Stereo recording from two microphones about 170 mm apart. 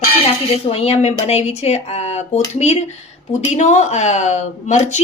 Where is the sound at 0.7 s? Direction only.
35° left (ahead or behind).